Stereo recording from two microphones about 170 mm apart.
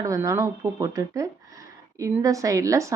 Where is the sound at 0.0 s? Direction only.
20° right (ahead or behind).